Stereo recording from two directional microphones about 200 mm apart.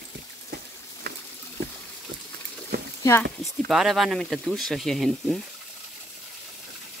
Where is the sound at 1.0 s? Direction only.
50° right (ahead or behind).